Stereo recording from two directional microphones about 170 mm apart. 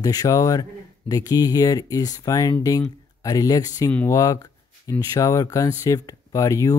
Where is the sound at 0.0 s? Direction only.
20° left (ahead or behind).